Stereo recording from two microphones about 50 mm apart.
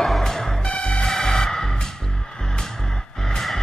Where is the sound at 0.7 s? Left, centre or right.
Centre.